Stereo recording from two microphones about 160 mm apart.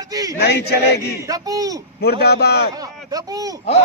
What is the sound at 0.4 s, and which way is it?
Speech, 90° left.